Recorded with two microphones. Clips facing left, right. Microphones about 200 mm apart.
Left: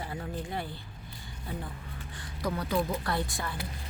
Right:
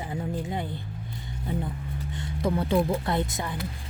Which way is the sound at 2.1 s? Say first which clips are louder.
Right 6 dB; 25° right (ahead or behind).